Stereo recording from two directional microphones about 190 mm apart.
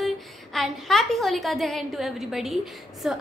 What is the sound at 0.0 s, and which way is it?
A woman's voice, centre (ahead or behind).